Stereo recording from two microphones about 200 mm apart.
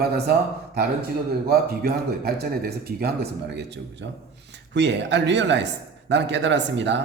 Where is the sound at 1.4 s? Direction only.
50° right (ahead or behind).